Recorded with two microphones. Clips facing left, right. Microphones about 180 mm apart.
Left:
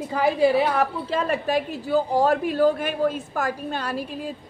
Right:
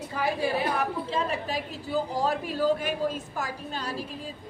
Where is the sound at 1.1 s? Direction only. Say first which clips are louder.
Left 10 dB; 70° left (ahead or behind).